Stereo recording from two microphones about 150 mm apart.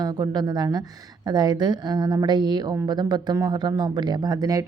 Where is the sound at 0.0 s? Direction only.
25° right (ahead or behind).